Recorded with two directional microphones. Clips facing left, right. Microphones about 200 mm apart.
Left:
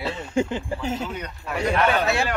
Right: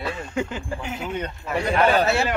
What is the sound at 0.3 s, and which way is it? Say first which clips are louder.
Speech: left 6 dB; 25° left (ahead or behind).